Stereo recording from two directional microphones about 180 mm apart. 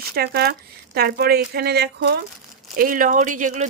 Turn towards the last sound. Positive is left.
turn(degrees=-40)  # may be behind; listen again after turning